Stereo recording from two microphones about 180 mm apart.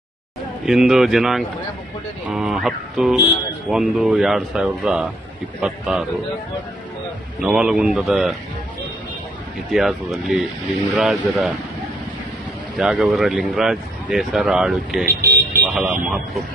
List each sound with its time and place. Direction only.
0.6 s speech: 5° right (ahead or behind)
7.4 s speech: 5° right (ahead or behind)
9.7 s speech: centre (ahead or behind)
12.7 s speech: centre (ahead or behind)
15.0 s speech: 60° right (ahead or behind)
15.6 s speech: 5° right (ahead or behind)